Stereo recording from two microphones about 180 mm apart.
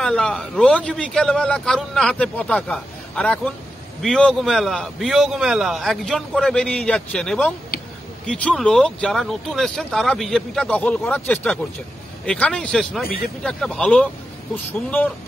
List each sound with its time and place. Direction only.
0.0 s a man's voice: 5° left (ahead or behind)
13.0 s speech: 55° left (ahead or behind)
13.4 s a man's voice: 5° left (ahead or behind)